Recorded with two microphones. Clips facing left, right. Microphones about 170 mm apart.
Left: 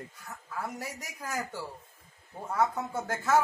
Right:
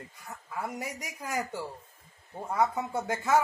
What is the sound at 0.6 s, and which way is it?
Speech, 15° right (ahead or behind).